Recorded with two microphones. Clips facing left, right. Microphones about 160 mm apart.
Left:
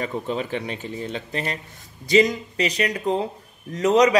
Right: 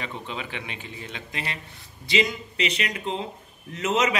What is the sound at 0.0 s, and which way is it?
Speech, 45° left (ahead or behind).